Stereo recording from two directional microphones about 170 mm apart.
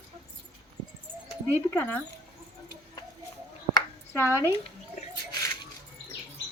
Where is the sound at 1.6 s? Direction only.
10° left (ahead or behind).